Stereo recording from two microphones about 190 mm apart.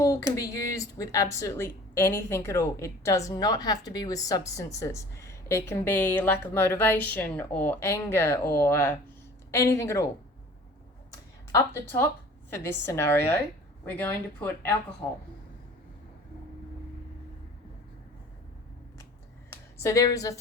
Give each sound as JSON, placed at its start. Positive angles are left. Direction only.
{"t": 0.0, "sound": "speech", "side_deg": 15}
{"t": 11.5, "sound": "speech", "side_deg": 10}
{"t": 19.8, "sound": "speech", "side_deg": 15}